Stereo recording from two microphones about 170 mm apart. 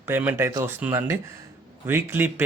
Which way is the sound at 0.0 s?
10° right (ahead or behind).